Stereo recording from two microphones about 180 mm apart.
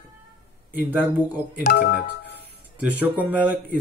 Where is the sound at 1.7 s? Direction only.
60° left (ahead or behind).